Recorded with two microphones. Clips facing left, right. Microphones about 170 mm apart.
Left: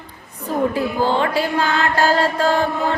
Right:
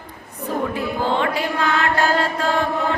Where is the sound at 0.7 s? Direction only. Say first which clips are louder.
Left 3 dB; 35° left (ahead or behind).